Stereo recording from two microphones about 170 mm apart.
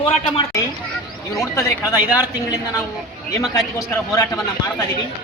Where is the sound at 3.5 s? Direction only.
20° left (ahead or behind).